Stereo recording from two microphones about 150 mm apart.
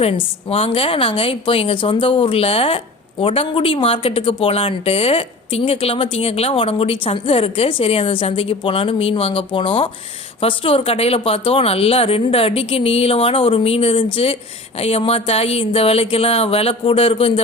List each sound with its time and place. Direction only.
0.0 s a woman's voice: 40° left (ahead or behind)